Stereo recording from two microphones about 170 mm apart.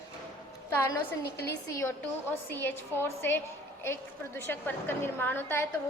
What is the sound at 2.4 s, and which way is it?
A woman's voice, 15° left (ahead or behind).